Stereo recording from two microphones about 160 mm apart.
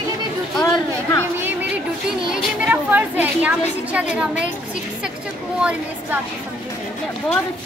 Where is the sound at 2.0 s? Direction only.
5° right (ahead or behind).